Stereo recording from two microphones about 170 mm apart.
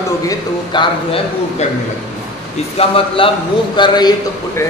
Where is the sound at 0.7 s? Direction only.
25° left (ahead or behind).